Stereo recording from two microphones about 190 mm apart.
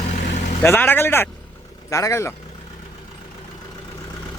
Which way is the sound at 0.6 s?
10° left (ahead or behind).